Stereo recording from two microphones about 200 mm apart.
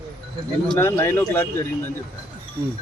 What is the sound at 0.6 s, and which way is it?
Speech, 10° left (ahead or behind).